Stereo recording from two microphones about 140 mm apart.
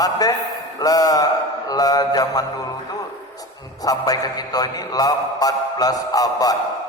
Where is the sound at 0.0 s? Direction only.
25° left (ahead or behind).